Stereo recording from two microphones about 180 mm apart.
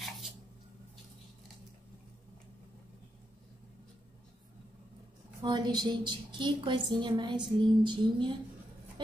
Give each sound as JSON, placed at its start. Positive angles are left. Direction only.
{"t": 5.4, "sound": "a woman's voice", "side_deg": -25}